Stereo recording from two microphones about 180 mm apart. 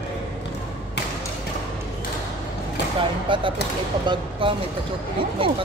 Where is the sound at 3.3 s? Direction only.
30° right (ahead or behind).